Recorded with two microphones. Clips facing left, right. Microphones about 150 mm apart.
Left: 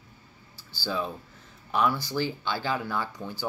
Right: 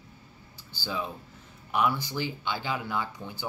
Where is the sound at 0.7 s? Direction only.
15° right (ahead or behind).